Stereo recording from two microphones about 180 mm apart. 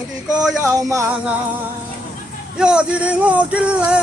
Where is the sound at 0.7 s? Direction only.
15° right (ahead or behind).